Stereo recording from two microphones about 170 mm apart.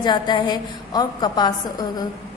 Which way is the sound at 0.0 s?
25° left (ahead or behind).